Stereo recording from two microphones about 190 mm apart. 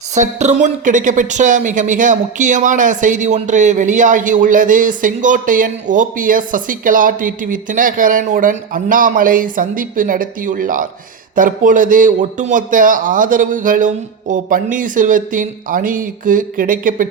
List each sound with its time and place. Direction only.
0.1 s a woman's voice: 40° right (ahead or behind)